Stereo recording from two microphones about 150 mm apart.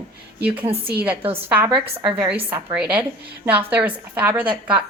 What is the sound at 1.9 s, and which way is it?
Speech, 30° right (ahead or behind).